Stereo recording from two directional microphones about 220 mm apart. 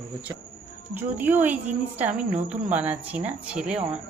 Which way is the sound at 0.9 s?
10° right (ahead or behind).